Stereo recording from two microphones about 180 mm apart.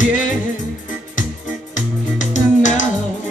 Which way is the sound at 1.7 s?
45° left (ahead or behind).